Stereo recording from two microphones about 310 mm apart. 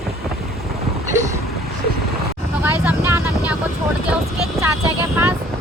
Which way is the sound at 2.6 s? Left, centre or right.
Centre.